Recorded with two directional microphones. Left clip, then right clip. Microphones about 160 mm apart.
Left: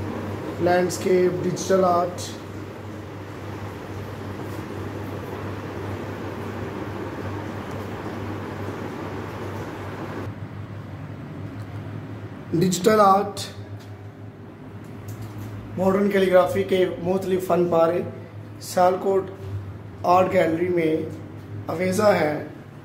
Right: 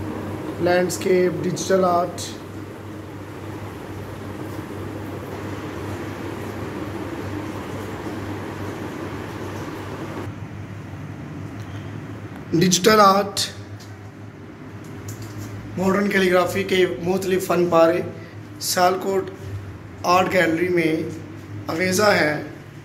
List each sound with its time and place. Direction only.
0.7 s speech: centre (ahead or behind)
12.4 s speech: 5° left (ahead or behind)
16.1 s speech: 5° left (ahead or behind)